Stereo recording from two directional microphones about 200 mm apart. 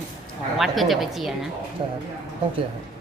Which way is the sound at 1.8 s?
25° right (ahead or behind).